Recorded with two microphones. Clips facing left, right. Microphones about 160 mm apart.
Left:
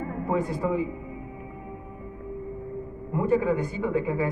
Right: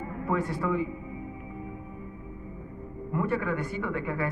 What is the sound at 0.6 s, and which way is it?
Speech, 30° left (ahead or behind).